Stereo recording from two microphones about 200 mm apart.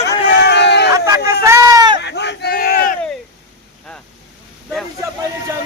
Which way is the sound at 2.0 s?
60° left (ahead or behind).